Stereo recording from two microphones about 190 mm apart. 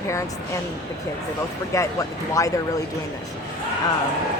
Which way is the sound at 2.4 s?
15° left (ahead or behind).